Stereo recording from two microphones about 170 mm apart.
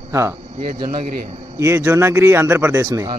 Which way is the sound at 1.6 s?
15° right (ahead or behind).